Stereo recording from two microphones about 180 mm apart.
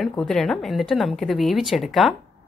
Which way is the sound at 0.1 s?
5° left (ahead or behind).